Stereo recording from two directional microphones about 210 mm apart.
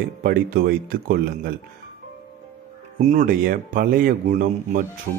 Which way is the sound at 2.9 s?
35° right (ahead or behind).